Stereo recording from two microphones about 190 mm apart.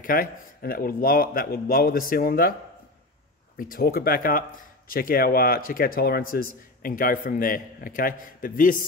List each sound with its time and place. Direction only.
0.0 s speech: 50° left (ahead or behind)
3.5 s speech: 50° left (ahead or behind)